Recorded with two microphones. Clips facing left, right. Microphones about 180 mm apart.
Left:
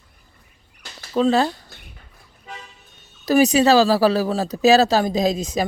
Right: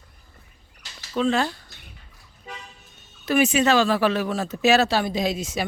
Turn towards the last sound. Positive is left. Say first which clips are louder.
# left 5 dB
turn(degrees=40)  # may be behind; listen again after turning